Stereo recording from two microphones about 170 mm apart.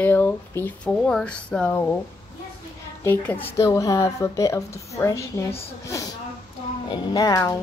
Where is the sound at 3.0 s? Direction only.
10° left (ahead or behind).